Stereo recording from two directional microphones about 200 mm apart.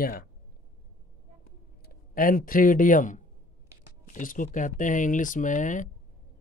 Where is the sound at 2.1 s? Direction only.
45° left (ahead or behind).